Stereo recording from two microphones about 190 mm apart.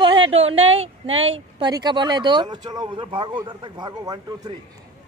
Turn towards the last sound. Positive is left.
turn(degrees=-20)  # may be behind; listen again after turning